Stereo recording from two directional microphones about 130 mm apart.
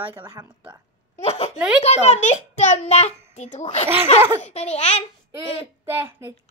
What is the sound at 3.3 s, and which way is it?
A child's voice, 65° left (ahead or behind).